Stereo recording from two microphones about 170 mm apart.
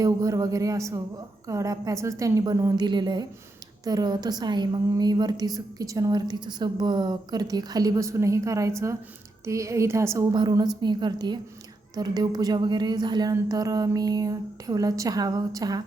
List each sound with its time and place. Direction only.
0.0 s a woman's voice: 20° right (ahead or behind)